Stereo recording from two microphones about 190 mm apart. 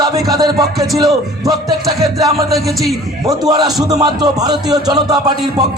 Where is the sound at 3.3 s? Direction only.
20° right (ahead or behind).